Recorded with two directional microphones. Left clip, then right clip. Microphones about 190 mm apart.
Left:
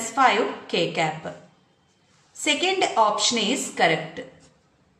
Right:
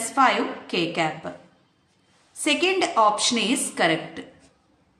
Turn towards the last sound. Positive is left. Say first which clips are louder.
# left 1 dB
turn(degrees=-20)  # may be behind; listen again after turning